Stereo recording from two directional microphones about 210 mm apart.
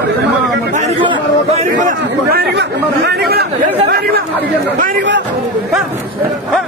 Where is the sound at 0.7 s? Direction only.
30° right (ahead or behind).